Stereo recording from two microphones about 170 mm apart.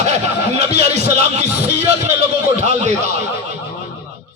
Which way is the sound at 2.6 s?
40° right (ahead or behind).